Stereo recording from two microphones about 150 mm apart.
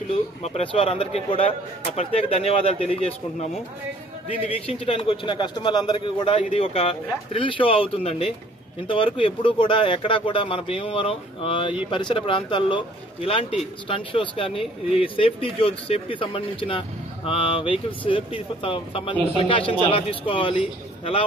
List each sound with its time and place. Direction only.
0.1 s speech: 40° left (ahead or behind)